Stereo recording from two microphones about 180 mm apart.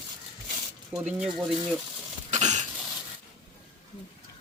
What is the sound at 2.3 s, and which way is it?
Cough, 40° right (ahead or behind).